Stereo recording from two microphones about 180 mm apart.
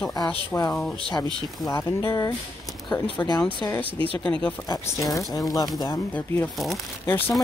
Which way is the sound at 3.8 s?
30° right (ahead or behind).